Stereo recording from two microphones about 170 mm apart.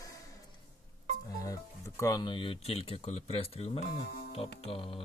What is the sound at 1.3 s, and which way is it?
Speech, 20° left (ahead or behind).